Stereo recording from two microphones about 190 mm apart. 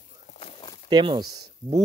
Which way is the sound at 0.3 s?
35° left (ahead or behind).